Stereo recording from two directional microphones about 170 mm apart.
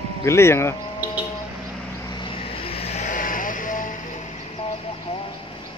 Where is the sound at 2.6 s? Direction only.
35° left (ahead or behind); by 3.9 s 50° left (ahead or behind).